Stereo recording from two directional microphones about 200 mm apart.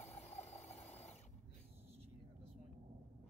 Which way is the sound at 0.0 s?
35° left (ahead or behind).